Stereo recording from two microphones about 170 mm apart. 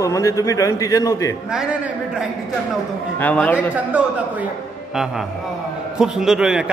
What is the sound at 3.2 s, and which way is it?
Speech, 10° left (ahead or behind).